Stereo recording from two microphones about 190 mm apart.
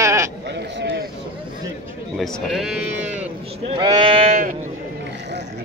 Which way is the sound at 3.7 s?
25° right (ahead or behind).